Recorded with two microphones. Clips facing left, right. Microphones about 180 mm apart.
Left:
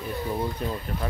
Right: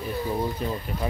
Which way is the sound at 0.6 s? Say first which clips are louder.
Right 1 dB; centre (ahead or behind).